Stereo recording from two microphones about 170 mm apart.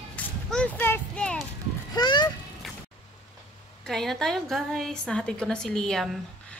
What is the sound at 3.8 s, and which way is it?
A woman's voice, centre (ahead or behind).